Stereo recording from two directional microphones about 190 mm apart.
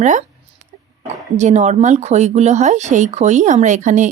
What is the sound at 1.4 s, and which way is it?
Speech, 35° right (ahead or behind).